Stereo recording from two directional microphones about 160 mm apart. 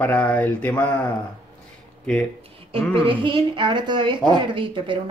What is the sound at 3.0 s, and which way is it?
A woman's voice, 30° right (ahead or behind).